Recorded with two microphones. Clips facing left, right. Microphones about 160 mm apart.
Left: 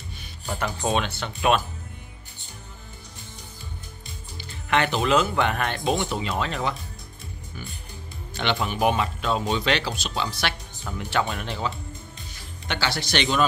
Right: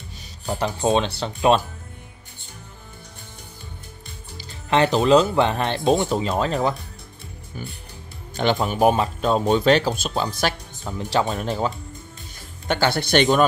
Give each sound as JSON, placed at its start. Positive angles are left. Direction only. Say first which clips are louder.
{"t": 0.5, "sound": "speech", "louder": "right 5 dB", "side_deg": -30}
{"t": 4.4, "sound": "speech", "louder": "right 4 dB", "side_deg": -30}
{"t": 8.4, "sound": "speech", "louder": "right 5 dB", "side_deg": -40}
{"t": 10.8, "sound": "speech", "louder": "right 4 dB", "side_deg": -25}